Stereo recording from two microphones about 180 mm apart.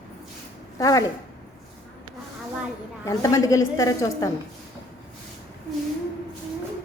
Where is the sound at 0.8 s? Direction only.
20° left (ahead or behind).